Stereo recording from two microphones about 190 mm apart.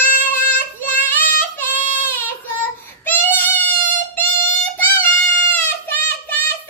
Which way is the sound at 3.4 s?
10° left (ahead or behind).